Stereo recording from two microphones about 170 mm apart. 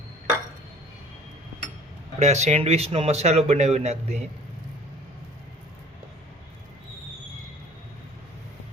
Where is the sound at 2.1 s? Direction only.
40° right (ahead or behind).